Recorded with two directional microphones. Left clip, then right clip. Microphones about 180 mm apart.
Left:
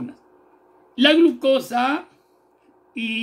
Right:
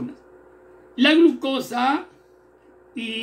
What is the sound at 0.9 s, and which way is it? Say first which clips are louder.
Speech: left 1 dB; 60° left (ahead or behind).